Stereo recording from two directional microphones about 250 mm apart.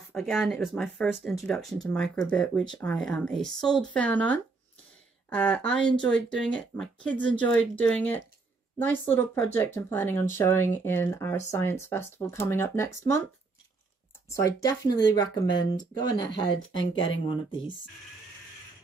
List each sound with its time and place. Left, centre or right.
0.1 s speech: centre
14.3 s speech: centre
16.7 s speech: left